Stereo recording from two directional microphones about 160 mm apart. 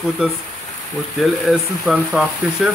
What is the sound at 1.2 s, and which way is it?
Speech, centre (ahead or behind).